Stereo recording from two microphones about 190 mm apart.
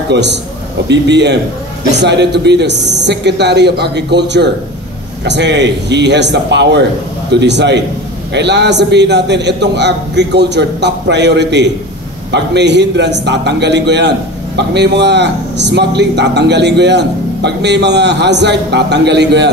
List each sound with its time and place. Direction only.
0.1 s a man's voice: 65° right (ahead or behind)